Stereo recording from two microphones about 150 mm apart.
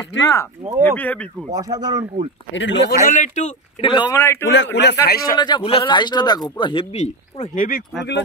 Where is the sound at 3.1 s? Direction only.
55° left (ahead or behind).